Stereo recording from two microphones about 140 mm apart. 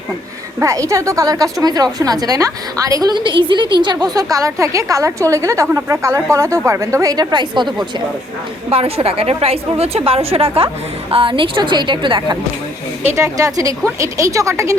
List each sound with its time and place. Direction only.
0.6 s a woman's voice: 20° right (ahead or behind)
8.7 s a woman's voice: 45° right (ahead or behind)
13.1 s a woman's voice: 20° right (ahead or behind)